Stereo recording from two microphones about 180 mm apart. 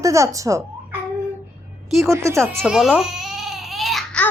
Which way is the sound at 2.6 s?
Centre (ahead or behind).